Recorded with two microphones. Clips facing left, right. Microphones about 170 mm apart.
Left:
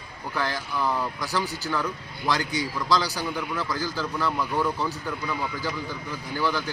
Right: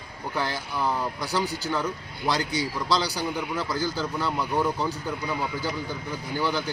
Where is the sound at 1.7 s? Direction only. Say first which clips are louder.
Right 1 dB; 25° right (ahead or behind).